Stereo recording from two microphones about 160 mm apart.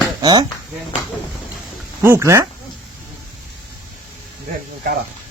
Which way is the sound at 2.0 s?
15° right (ahead or behind).